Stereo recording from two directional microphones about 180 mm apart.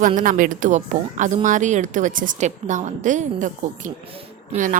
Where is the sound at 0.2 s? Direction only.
50° right (ahead or behind).